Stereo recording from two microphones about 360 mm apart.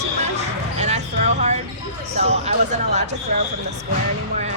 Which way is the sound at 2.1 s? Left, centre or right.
Centre.